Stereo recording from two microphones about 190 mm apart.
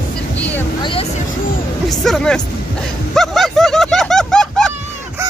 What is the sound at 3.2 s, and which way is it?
Vehicle, centre (ahead or behind).